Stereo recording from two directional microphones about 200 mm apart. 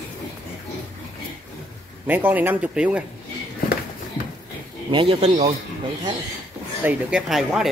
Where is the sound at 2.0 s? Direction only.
10° right (ahead or behind).